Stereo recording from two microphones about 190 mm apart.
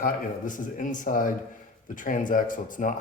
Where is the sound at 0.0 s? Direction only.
45° left (ahead or behind).